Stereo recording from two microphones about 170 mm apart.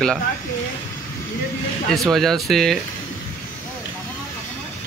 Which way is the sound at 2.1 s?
Centre (ahead or behind).